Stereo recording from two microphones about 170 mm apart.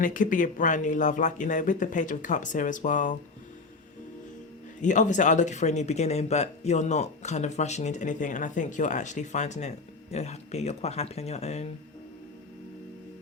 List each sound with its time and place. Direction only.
0.0 s speech: 50° left (ahead or behind)
4.8 s speech: 45° left (ahead or behind)